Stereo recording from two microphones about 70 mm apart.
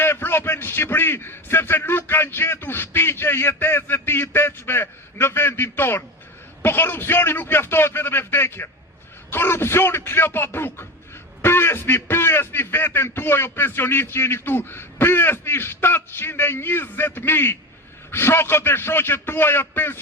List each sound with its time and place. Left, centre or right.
0.0 s a man's voice: left